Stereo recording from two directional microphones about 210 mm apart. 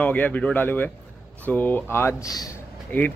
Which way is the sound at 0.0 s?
5° left (ahead or behind).